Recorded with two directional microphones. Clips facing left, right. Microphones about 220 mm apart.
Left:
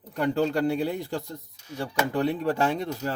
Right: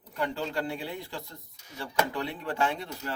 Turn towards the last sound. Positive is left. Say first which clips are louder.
# left 5 dB
turn(degrees=40)  # may be behind; listen again after turning